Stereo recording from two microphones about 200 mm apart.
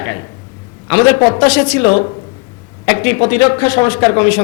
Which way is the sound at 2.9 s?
15° left (ahead or behind).